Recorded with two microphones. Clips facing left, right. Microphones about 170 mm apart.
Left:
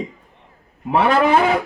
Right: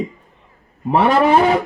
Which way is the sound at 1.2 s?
30° right (ahead or behind).